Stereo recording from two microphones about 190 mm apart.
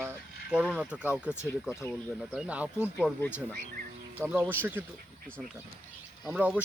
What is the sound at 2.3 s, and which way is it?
Speech, 5° right (ahead or behind).